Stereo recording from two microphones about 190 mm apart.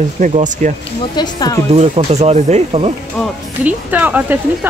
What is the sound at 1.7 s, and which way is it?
Speech, 35° right (ahead or behind).